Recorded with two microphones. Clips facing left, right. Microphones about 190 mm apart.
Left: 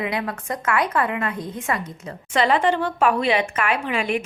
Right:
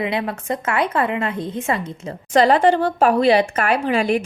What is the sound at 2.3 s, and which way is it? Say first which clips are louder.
Speech: right 5 dB; 40° right (ahead or behind).